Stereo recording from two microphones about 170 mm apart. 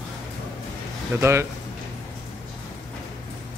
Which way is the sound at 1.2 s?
15° right (ahead or behind).